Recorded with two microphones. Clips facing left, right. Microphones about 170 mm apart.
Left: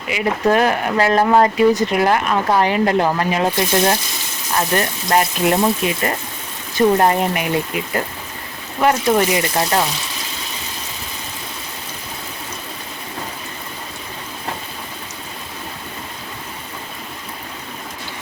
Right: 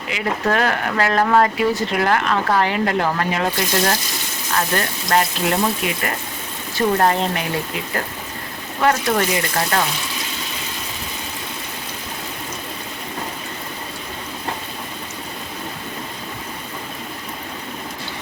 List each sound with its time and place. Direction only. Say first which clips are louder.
0.1 s speech: left 4 dB; 15° left (ahead or behind)
8.8 s speech: left 3 dB; 15° left (ahead or behind)